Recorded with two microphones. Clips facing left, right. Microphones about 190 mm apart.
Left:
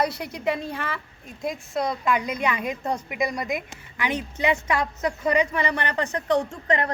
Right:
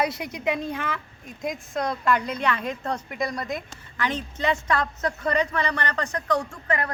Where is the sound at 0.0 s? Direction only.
Centre (ahead or behind).